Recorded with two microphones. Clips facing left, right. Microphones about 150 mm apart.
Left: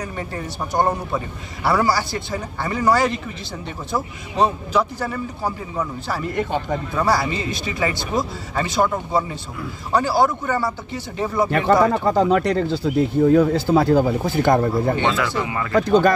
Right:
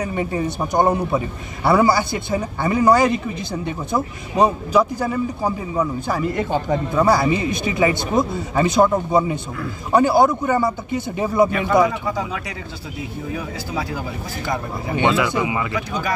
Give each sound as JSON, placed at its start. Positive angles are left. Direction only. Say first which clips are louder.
{"t": 0.1, "sound": "a man's voice", "louder": "right 7 dB", "side_deg": -15}
{"t": 11.5, "sound": "speech", "louder": "left 1 dB", "side_deg": 55}
{"t": 15.0, "sound": "speech", "louder": "right 2 dB", "side_deg": -15}
{"t": 15.7, "sound": "speech", "louder": "left 10 dB", "side_deg": 60}